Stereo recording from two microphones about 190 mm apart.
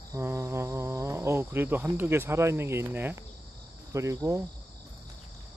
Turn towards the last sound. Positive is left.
turn(degrees=-15)  # may be behind; listen again after turning